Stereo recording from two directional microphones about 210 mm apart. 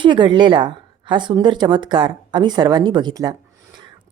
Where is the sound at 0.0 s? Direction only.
25° right (ahead or behind).